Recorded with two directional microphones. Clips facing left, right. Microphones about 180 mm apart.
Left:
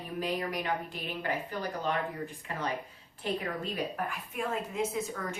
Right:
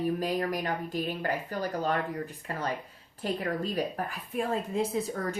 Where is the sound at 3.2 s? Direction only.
40° right (ahead or behind).